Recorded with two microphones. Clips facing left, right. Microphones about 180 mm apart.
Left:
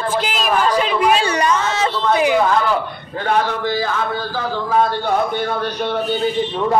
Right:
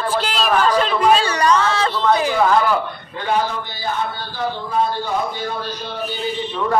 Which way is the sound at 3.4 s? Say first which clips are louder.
Left 5 dB; 90° left.